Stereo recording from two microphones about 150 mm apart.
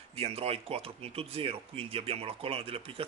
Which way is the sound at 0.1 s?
40° right (ahead or behind).